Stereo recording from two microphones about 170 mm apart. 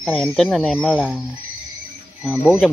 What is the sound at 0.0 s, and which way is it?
Speech, centre (ahead or behind).